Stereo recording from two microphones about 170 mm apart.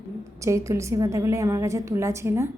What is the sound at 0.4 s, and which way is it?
A woman's voice, 15° right (ahead or behind).